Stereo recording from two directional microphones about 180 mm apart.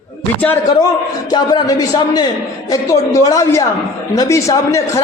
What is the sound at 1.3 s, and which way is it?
A man's voice, 20° left (ahead or behind).